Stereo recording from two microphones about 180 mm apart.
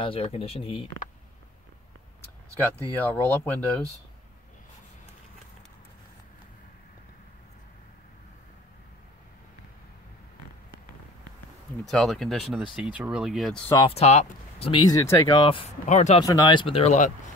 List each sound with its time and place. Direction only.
0.0 s speech: 30° left (ahead or behind)
3.0 s speech: 10° left (ahead or behind)
11.9 s speech: centre (ahead or behind)
13.8 s speech: 35° left (ahead or behind)